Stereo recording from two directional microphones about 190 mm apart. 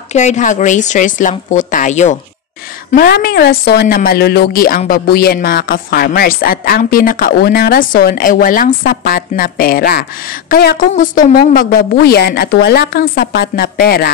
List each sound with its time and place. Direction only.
0.1 s a woman's voice: 40° left (ahead or behind)
2.9 s a woman's voice: 50° left (ahead or behind)